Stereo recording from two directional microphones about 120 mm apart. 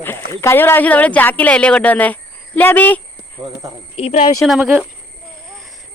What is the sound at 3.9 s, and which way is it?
Speech, 60° left (ahead or behind).